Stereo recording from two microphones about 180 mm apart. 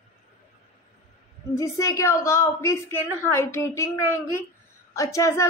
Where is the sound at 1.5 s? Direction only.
15° left (ahead or behind).